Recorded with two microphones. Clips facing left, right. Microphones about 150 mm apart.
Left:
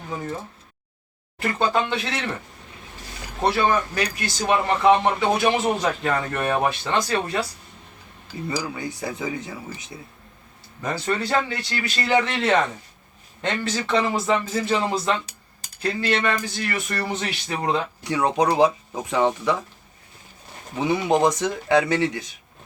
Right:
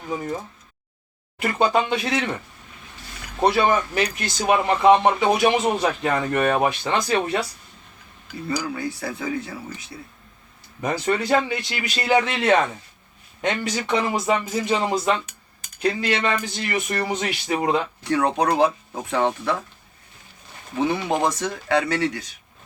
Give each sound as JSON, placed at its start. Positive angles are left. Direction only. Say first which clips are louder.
{"t": 0.1, "sound": "speech", "louder": "right 3 dB", "side_deg": -15}
{"t": 1.4, "sound": "speech", "louder": "right 2 dB", "side_deg": -15}
{"t": 3.4, "sound": "speech", "louder": "right 2 dB", "side_deg": -20}
{"t": 8.5, "sound": "speech", "louder": "right 3 dB", "side_deg": 20}
{"t": 10.8, "sound": "speech", "louder": "right 3 dB", "side_deg": -20}
{"t": 18.0, "sound": "speech", "louder": "left 1 dB", "side_deg": 15}
{"t": 20.8, "sound": "speech", "louder": "left 3 dB", "side_deg": 15}